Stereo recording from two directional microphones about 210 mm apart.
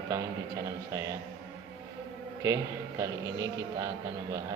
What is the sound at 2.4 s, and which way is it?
A man's voice, 15° right (ahead or behind).